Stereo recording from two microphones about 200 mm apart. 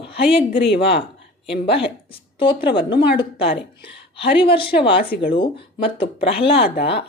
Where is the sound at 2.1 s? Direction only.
25° left (ahead or behind).